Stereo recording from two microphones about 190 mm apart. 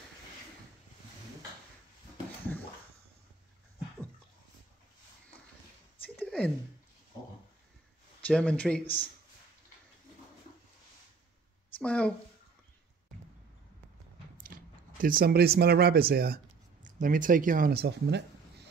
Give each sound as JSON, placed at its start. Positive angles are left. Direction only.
{"t": 6.0, "sound": "a sound", "side_deg": 5}
{"t": 8.3, "sound": "speech", "side_deg": 5}
{"t": 11.8, "sound": "a woman's voice", "side_deg": 5}
{"t": 14.4, "sound": "speech", "side_deg": -45}